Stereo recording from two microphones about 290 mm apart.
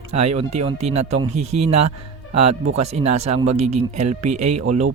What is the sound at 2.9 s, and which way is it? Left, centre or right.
Speech, right.